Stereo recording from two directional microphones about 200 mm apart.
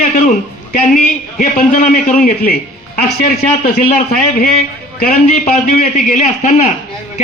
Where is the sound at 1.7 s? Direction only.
40° left (ahead or behind).